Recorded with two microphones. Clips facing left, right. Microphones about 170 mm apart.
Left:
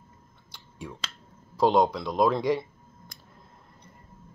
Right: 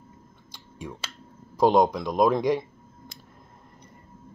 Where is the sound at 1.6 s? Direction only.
15° right (ahead or behind).